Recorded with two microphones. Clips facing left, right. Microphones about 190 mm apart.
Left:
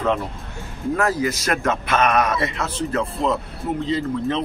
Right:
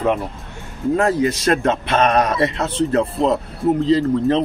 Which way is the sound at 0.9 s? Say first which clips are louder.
Right 4 dB; 30° right (ahead or behind).